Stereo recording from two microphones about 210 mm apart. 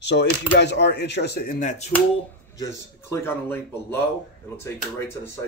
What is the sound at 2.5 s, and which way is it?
A man's voice, 10° left (ahead or behind).